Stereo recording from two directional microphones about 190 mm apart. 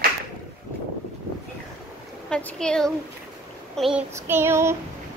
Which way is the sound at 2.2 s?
5° left (ahead or behind).